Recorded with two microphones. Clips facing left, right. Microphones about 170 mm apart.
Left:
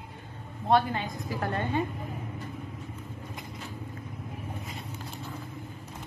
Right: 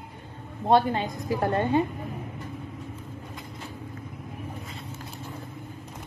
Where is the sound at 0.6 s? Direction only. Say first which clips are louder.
Right 4 dB; 30° right (ahead or behind).